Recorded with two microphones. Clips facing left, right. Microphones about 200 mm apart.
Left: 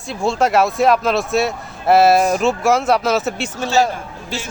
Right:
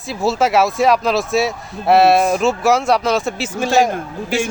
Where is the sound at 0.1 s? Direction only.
5° right (ahead or behind).